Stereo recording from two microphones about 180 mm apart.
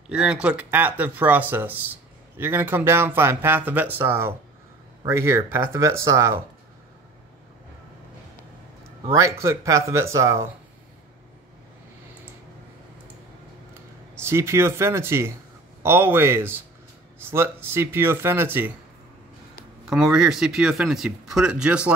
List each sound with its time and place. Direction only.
0.1 s speech: 5° right (ahead or behind)
9.1 s speech: 15° right (ahead or behind)
14.2 s speech: 15° right (ahead or behind)
19.9 s speech: centre (ahead or behind)